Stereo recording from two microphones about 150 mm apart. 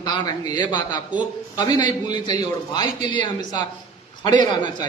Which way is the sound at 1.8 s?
50° right (ahead or behind).